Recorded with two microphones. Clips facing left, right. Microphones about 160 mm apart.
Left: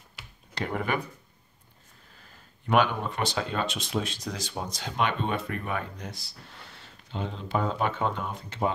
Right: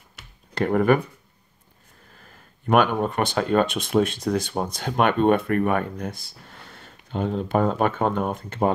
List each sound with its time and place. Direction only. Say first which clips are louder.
0.6 s speech: right 10 dB; 50° right (ahead or behind)
2.7 s speech: right 5 dB; 50° right (ahead or behind)